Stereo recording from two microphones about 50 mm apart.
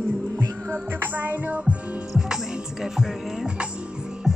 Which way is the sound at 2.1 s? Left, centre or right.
Centre.